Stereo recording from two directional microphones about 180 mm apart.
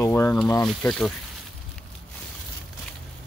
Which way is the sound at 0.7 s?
Centre (ahead or behind).